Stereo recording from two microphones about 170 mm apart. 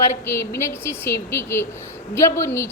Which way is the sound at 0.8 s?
15° left (ahead or behind).